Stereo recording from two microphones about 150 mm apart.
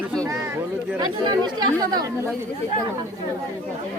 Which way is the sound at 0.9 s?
30° right (ahead or behind).